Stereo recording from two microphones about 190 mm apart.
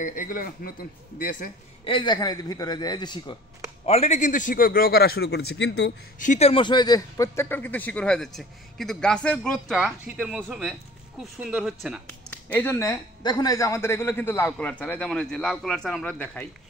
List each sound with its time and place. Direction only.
0.0 s a man's voice: 45° left (ahead or behind)
1.9 s a man's voice: 25° left (ahead or behind)
3.8 s a man's voice: 35° left (ahead or behind); by 5.9 s 65° left (ahead or behind)
6.1 s speech: 40° left (ahead or behind); by 12.0 s 5° right (ahead or behind)
12.3 s a man's voice: 10° left (ahead or behind)